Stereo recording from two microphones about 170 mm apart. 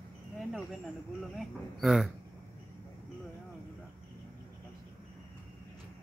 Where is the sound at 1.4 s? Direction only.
Centre (ahead or behind).